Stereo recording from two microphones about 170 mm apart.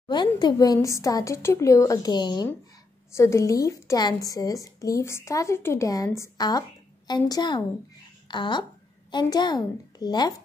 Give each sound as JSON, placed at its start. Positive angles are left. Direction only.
{"t": 0.1, "sound": "a woman's voice", "side_deg": 25}